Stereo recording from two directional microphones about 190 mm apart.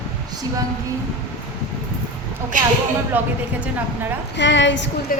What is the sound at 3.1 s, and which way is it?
Speech, 10° right (ahead or behind).